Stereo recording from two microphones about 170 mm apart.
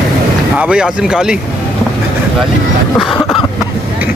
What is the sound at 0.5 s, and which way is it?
Speech, 5° right (ahead or behind).